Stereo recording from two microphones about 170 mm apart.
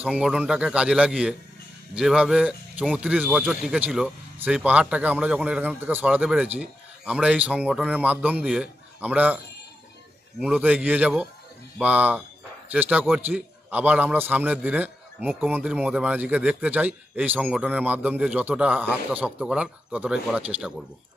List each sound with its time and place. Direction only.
0.0 s a man's voice: 5° right (ahead or behind)
10.4 s a man's voice: 5° right (ahead or behind)